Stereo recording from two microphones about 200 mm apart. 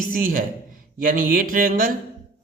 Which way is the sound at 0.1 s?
45° right (ahead or behind).